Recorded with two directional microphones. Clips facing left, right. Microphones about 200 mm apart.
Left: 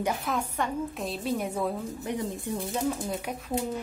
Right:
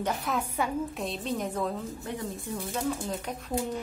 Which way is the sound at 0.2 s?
5° right (ahead or behind).